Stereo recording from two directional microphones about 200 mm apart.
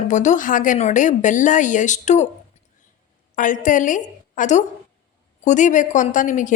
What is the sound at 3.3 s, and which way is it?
A woman's voice, 40° left (ahead or behind).